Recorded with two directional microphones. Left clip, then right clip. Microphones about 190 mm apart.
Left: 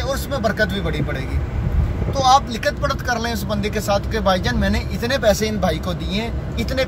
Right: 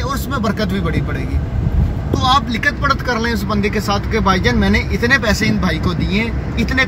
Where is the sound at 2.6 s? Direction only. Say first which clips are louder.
Right 5 dB; 10° left (ahead or behind).